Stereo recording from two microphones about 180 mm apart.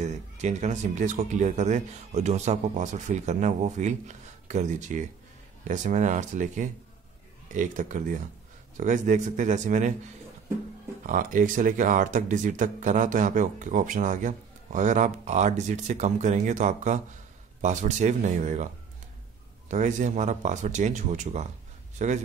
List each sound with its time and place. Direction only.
0.0 s speech: 40° right (ahead or behind)
11.1 s speech: 50° right (ahead or behind)
19.7 s a man's voice: 45° right (ahead or behind)